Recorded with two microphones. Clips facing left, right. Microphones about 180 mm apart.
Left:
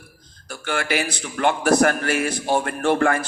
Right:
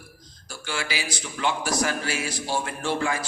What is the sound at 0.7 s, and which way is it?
A man's voice, 55° left (ahead or behind).